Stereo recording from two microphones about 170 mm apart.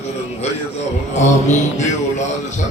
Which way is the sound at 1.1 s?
45° left (ahead or behind).